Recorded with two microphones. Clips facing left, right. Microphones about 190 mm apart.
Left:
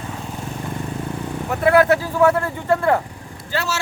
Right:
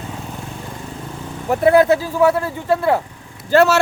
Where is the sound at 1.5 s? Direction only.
25° right (ahead or behind).